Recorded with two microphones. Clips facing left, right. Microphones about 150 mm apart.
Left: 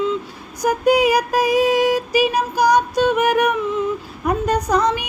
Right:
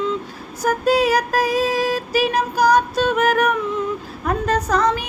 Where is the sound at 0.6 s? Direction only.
15° left (ahead or behind).